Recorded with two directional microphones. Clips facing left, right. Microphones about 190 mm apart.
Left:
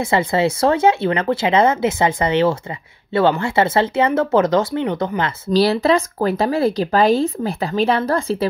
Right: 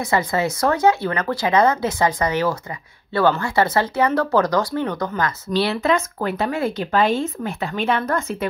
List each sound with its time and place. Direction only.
0.0 s speech: 25° left (ahead or behind)
5.5 s speech: 35° left (ahead or behind)